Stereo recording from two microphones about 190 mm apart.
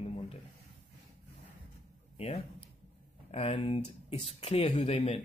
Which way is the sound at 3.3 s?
35° left (ahead or behind).